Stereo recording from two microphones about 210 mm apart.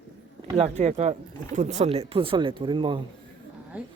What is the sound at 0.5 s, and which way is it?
Speech, 30° right (ahead or behind).